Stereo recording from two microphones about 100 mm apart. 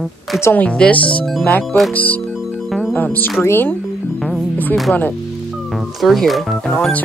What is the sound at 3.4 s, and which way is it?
Speech, 25° left (ahead or behind).